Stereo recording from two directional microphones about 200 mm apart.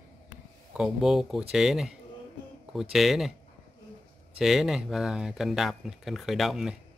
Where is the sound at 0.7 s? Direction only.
Centre (ahead or behind).